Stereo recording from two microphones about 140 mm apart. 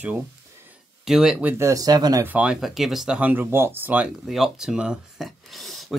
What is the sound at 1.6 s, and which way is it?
Speech, 25° right (ahead or behind).